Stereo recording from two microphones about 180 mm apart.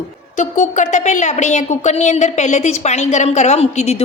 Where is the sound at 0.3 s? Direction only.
45° left (ahead or behind).